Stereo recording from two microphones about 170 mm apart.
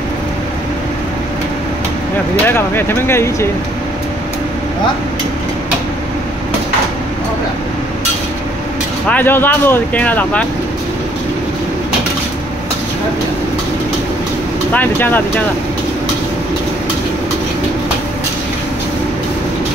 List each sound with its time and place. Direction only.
2.4 s speech: 15° left (ahead or behind)
9.0 s speech: 10° left (ahead or behind)
14.7 s speech: 10° left (ahead or behind)